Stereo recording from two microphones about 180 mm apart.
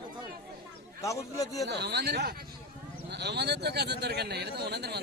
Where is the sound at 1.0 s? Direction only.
20° left (ahead or behind).